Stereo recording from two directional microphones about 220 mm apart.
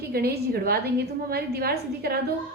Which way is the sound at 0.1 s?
45° right (ahead or behind).